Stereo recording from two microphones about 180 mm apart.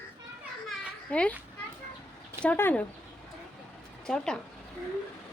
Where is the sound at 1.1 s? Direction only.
5° left (ahead or behind).